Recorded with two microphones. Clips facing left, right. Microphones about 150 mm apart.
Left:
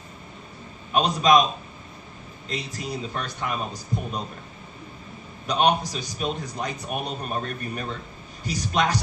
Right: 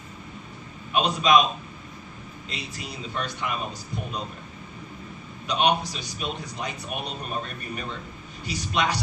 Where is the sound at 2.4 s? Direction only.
45° left (ahead or behind).